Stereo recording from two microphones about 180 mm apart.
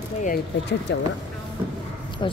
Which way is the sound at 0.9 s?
70° left (ahead or behind).